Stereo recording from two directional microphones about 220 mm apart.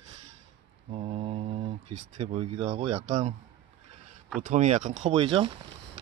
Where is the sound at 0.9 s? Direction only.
25° right (ahead or behind).